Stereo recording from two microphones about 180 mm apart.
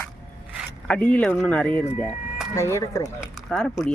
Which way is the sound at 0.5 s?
5° left (ahead or behind).